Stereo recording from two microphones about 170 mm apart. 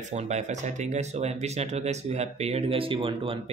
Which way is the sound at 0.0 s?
40° right (ahead or behind).